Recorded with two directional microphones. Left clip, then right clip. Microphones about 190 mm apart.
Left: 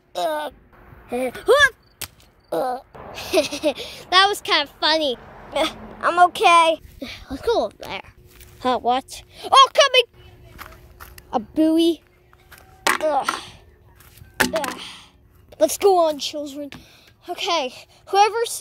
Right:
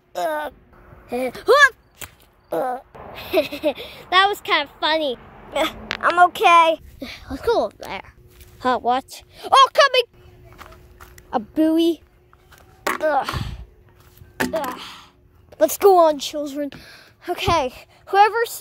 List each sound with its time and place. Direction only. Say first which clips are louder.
0.1 s a sound: even; centre (ahead or behind)
1.0 s a child's voice: even; centre (ahead or behind)
10.6 s walk: left 3 dB; centre (ahead or behind)
11.2 s a child's voice: even; 5° left (ahead or behind)
12.4 s a sound: left 4 dB; centre (ahead or behind)
15.5 s speech: right 1 dB; centre (ahead or behind)
15.8 s speech: right 5 dB; 15° right (ahead or behind)
16.8 s a sound: right 6 dB; 25° right (ahead or behind)
17.5 s speech: right 3 dB; 15° right (ahead or behind)
17.7 s a child's voice: even; centre (ahead or behind)